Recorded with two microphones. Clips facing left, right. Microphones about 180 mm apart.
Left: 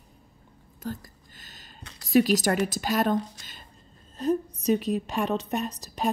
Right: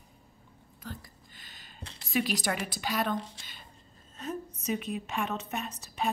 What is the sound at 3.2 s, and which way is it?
Speech, 25° right (ahead or behind).